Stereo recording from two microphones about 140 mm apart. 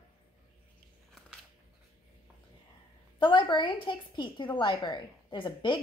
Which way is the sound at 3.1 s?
35° left (ahead or behind).